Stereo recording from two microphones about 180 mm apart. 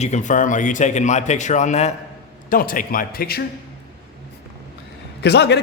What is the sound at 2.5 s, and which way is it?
Speech, 50° left (ahead or behind).